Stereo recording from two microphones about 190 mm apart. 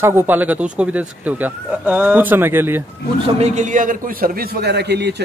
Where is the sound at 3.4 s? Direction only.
40° right (ahead or behind); by 5.1 s 60° right (ahead or behind).